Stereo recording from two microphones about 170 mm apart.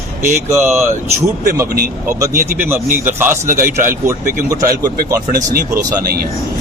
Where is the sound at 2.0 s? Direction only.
20° right (ahead or behind).